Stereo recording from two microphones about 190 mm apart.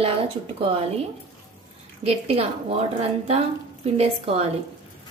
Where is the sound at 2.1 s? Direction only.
30° right (ahead or behind).